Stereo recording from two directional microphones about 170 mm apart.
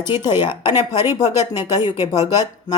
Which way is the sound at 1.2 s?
20° left (ahead or behind).